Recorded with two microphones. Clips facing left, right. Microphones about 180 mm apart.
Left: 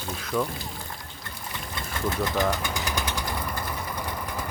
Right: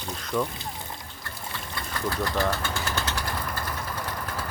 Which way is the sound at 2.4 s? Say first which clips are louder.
Even; 15° left (ahead or behind).